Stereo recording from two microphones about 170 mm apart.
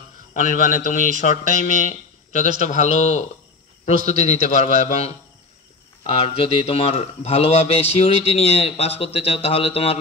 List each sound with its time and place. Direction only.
0.3 s a man's voice: 50° left (ahead or behind)
6.2 s a man's voice: 35° left (ahead or behind)